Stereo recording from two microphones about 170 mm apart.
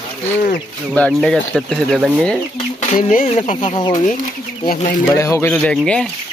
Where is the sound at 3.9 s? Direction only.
50° left (ahead or behind).